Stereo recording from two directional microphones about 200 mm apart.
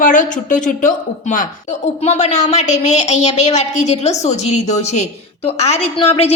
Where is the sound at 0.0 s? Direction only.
40° left (ahead or behind).